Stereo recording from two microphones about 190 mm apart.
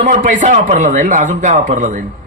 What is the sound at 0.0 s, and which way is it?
Speech, 40° right (ahead or behind).